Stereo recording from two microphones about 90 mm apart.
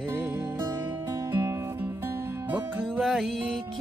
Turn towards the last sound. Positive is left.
turn(degrees=0)  # may be behind; listen again after turning